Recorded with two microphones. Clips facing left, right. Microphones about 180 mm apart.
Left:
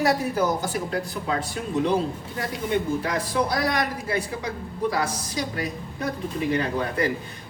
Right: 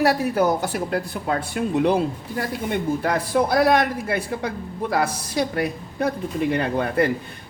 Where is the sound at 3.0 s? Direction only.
55° right (ahead or behind).